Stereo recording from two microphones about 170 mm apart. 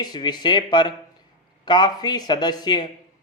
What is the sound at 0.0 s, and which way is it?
A man's voice, 25° left (ahead or behind).